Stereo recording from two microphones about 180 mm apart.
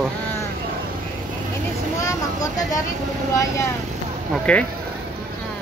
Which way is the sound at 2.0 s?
20° left (ahead or behind).